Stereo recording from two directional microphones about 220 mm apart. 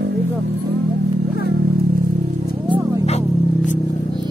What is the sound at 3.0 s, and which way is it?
Music, 30° left (ahead or behind).